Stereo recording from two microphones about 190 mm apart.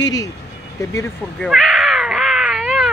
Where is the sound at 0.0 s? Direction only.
20° left (ahead or behind).